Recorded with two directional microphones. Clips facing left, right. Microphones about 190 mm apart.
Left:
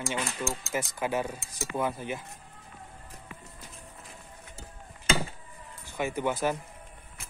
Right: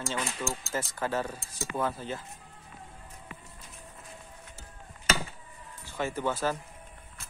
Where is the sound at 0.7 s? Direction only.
15° left (ahead or behind).